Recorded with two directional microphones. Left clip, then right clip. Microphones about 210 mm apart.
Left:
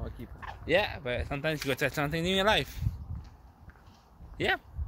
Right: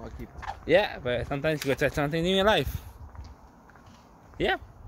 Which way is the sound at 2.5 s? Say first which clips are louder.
Right 3 dB; 30° right (ahead or behind).